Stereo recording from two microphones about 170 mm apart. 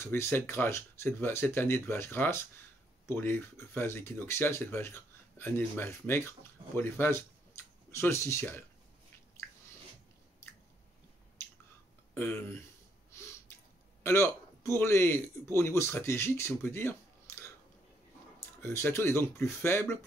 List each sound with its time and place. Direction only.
0.0 s speech: 15° left (ahead or behind)
12.1 s speech: 10° left (ahead or behind)
14.0 s a man's voice: 15° left (ahead or behind)
17.3 s scissors: 15° left (ahead or behind)
18.6 s speech: 15° left (ahead or behind)